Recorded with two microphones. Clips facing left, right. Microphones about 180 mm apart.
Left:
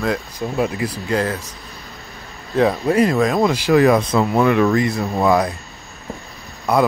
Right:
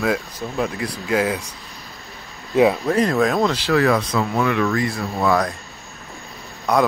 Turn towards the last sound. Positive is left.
turn(degrees=5)  # may be behind; listen again after turning